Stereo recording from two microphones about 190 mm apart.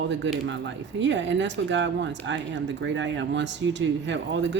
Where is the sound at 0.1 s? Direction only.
75° right (ahead or behind).